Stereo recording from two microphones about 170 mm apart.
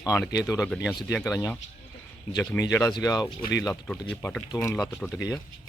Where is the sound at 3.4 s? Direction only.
90° left.